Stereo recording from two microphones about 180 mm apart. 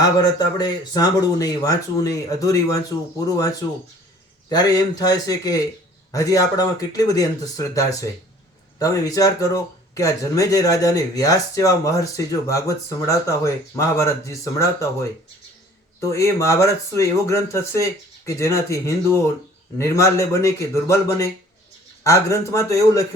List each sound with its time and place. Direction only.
0.0 s speech: 20° left (ahead or behind)
16.0 s speech: 15° left (ahead or behind)